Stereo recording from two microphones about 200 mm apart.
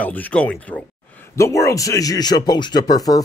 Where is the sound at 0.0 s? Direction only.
10° left (ahead or behind).